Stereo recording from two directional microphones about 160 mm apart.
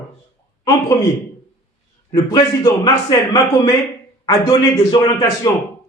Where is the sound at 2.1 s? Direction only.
25° left (ahead or behind).